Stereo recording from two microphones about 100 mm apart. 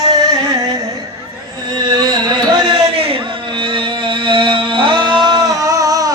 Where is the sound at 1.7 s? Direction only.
45° right (ahead or behind).